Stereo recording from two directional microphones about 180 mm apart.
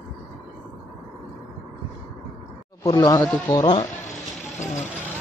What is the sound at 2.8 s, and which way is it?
Speech, 20° left (ahead or behind).